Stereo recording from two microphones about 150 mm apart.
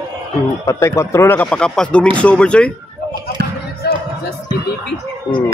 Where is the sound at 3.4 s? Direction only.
90° right.